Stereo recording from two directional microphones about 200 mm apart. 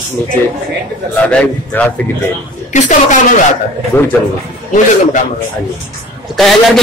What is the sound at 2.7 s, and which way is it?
Speech, 40° left (ahead or behind).